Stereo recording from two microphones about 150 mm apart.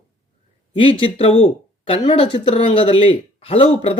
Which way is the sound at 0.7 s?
35° left (ahead or behind).